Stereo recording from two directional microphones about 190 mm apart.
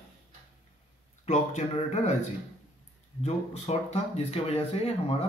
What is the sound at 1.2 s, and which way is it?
Speech, 35° left (ahead or behind).